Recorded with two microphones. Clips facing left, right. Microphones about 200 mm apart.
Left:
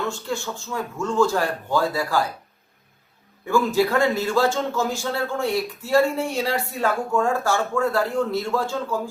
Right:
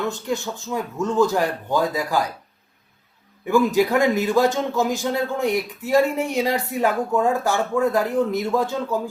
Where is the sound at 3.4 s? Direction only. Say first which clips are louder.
Right 2 dB; 15° right (ahead or behind).